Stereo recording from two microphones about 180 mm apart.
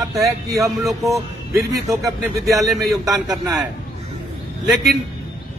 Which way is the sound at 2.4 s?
Centre (ahead or behind).